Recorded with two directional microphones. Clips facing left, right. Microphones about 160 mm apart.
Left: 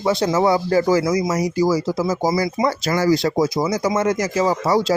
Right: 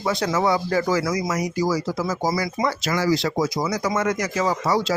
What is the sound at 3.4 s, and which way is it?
Speech, 25° left (ahead or behind).